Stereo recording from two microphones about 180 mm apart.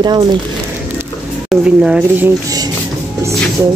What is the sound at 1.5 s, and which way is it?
Speech, 5° right (ahead or behind).